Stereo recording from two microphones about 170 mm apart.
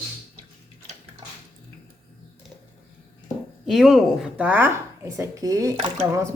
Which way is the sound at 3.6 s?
Centre (ahead or behind).